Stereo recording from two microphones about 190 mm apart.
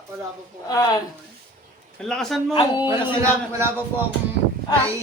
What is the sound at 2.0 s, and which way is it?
Speech, centre (ahead or behind).